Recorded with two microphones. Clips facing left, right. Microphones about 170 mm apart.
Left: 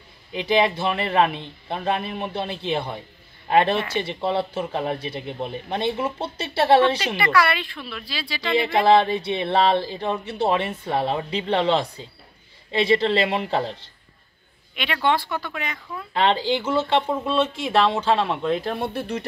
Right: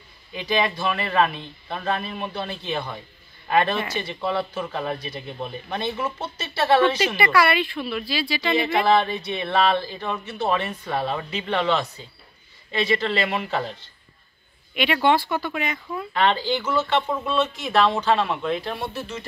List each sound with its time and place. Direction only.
0.3 s speech: 25° left (ahead or behind)
7.2 s speech: 5° right (ahead or behind)
8.5 s speech: 30° left (ahead or behind)
14.8 s speech: 5° right (ahead or behind)
16.1 s speech: 25° left (ahead or behind)
18.6 s speech: 50° left (ahead or behind)